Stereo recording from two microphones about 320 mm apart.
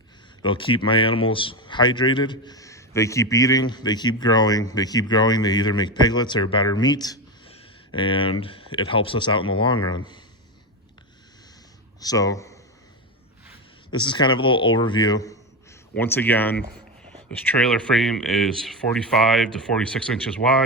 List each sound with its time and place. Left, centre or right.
0.4 s speech: centre
11.9 s speech: centre
13.9 s speech: centre